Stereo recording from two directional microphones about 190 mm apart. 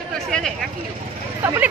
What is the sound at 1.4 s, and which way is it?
Speech, 10° right (ahead or behind).